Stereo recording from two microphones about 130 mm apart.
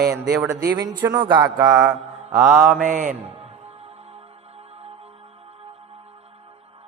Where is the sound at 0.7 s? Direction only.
30° right (ahead or behind).